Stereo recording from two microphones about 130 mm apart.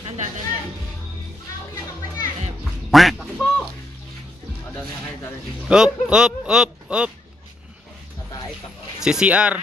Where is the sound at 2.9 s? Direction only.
Centre (ahead or behind).